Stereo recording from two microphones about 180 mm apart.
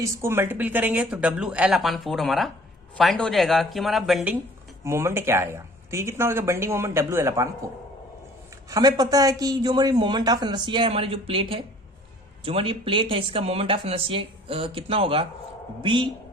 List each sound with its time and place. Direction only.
0.2 s speech: 15° right (ahead or behind)
4.8 s speech: 15° right (ahead or behind)
8.7 s speech: 20° right (ahead or behind)